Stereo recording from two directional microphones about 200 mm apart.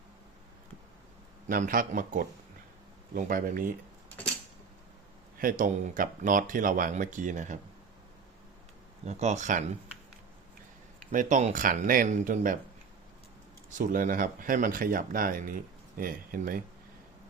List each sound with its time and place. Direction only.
1.5 s speech: 45° right (ahead or behind)
5.4 s speech: 45° right (ahead or behind)
9.0 s speech: 35° right (ahead or behind)
11.1 s speech: 40° right (ahead or behind)
13.7 s speech: 40° right (ahead or behind)